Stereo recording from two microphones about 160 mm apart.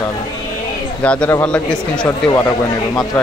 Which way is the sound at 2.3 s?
20° left (ahead or behind).